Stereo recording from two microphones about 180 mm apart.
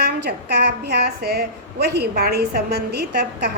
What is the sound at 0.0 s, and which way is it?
A woman's voice, 65° right (ahead or behind).